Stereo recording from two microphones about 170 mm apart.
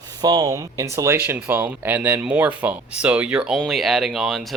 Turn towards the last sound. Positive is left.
turn(degrees=0)  # may be behind; listen again after turning